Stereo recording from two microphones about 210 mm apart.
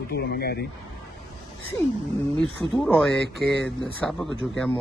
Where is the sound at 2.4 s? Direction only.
5° left (ahead or behind).